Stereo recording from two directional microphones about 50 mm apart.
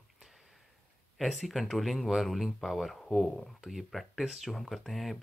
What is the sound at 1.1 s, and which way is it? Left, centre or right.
Speech, centre.